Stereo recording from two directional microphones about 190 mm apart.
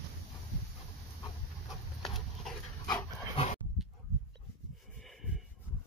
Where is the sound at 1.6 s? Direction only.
Centre (ahead or behind).